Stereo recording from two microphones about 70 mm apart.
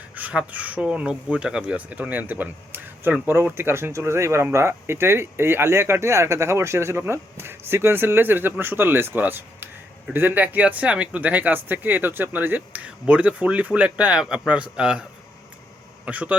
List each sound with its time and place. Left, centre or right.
0.1 s speech: right
16.0 s a man's voice: centre